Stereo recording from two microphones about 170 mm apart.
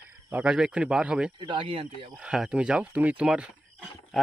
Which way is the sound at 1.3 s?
30° right (ahead or behind).